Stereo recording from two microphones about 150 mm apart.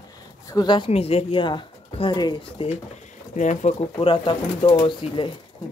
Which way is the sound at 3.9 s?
35° left (ahead or behind).